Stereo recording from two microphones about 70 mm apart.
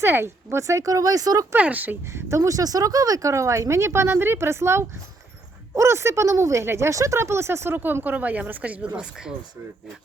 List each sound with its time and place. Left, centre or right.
0.0 s speech: right
1.5 s speech: right
2.1 s speech: right; by 9.3 s centre